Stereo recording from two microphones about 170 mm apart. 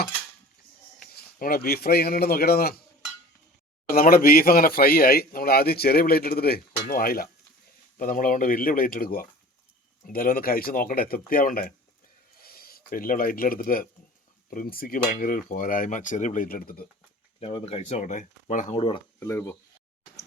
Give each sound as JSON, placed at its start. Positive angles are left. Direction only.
{"t": 1.1, "sound": "speech", "side_deg": 60}
{"t": 3.8, "sound": "speech", "side_deg": 60}
{"t": 17.4, "sound": "speech", "side_deg": 35}
{"t": 19.2, "sound": "speech", "side_deg": 15}